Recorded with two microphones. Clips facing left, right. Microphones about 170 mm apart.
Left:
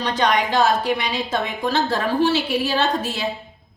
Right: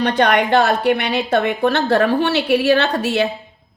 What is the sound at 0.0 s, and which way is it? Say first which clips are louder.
A woman's voice: right 5 dB; 60° right (ahead or behind).